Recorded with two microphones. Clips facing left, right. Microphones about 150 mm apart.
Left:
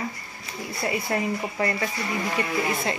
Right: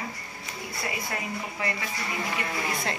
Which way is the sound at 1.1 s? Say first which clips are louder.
Left 7 dB; 35° left (ahead or behind).